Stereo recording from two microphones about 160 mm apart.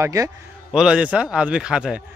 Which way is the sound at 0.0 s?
20° right (ahead or behind).